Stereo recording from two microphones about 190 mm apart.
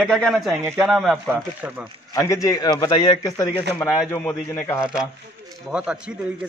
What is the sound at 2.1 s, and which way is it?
A man's voice, 15° left (ahead or behind).